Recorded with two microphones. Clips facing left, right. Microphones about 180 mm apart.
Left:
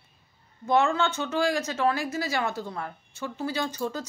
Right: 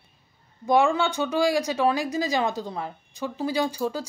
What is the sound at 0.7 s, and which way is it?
Speech, 15° right (ahead or behind).